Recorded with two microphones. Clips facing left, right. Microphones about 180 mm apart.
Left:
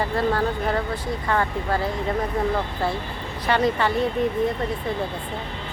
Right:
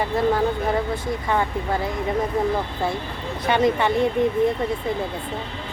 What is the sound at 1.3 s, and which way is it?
Speech, 15° right (ahead or behind).